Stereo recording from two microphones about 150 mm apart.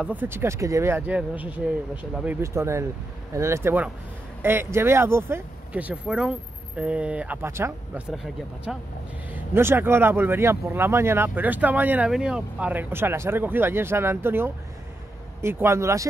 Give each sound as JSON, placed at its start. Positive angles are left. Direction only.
{"t": 0.0, "sound": "speech", "side_deg": -10}
{"t": 8.1, "sound": "speech", "side_deg": 0}
{"t": 9.3, "sound": "speech", "side_deg": -15}